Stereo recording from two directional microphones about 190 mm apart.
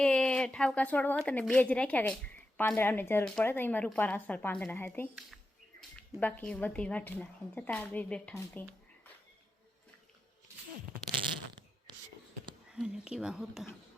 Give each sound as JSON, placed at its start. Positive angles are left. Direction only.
{"t": 0.0, "sound": "a woman's voice", "side_deg": 5}
{"t": 11.9, "sound": "a sound", "side_deg": -25}
{"t": 12.7, "sound": "speech", "side_deg": -5}